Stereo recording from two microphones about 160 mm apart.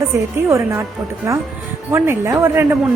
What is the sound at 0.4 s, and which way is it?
A woman's voice, 15° right (ahead or behind).